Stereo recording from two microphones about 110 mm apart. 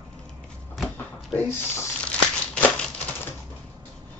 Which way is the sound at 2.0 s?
10° left (ahead or behind).